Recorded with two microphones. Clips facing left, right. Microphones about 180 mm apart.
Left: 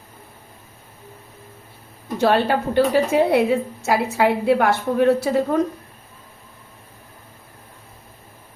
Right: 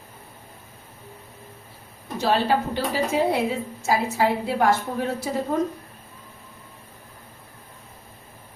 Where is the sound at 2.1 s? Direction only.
60° left (ahead or behind).